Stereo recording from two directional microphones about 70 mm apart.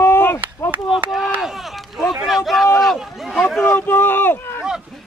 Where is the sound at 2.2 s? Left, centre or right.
Centre.